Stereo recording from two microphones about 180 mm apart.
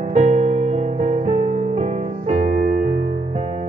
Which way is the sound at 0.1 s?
40° right (ahead or behind).